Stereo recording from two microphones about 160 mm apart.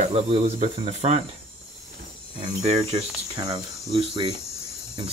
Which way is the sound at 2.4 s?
40° right (ahead or behind).